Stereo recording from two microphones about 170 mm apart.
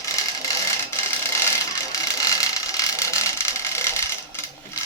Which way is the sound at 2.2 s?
20° left (ahead or behind).